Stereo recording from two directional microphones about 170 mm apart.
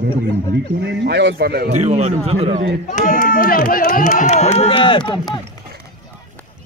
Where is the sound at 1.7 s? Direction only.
40° right (ahead or behind).